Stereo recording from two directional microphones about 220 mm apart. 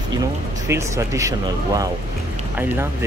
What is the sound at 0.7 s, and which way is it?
Speech, 15° right (ahead or behind).